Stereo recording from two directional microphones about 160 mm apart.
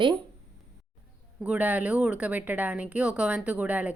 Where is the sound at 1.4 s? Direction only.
10° right (ahead or behind).